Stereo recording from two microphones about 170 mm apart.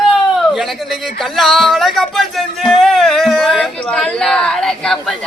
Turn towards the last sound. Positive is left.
turn(degrees=5)  # may be behind; listen again after turning